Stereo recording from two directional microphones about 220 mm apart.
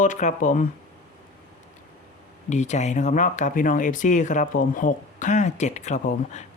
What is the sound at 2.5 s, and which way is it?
Speech, 30° left (ahead or behind).